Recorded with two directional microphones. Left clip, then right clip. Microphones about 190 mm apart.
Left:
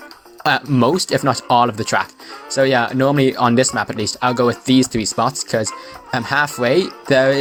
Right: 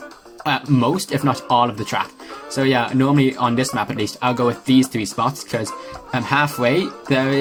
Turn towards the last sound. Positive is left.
turn(degrees=45)  # may be behind; listen again after turning